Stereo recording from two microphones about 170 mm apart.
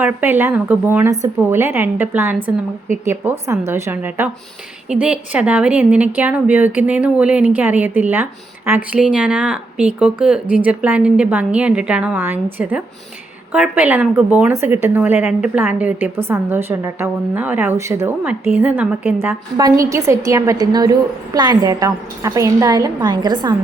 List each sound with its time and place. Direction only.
0.0 s a woman's voice: 10° right (ahead or behind)